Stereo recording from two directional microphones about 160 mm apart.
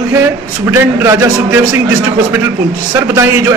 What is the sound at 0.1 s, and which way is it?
A man's voice, 15° right (ahead or behind).